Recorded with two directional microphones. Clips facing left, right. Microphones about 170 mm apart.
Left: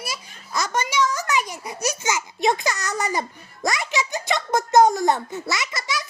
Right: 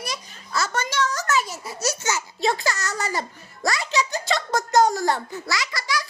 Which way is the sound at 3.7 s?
20° left (ahead or behind).